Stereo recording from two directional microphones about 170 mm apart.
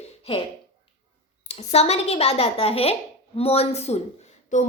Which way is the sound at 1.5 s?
40° left (ahead or behind).